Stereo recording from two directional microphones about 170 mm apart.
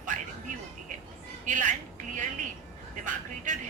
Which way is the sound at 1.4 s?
50° right (ahead or behind).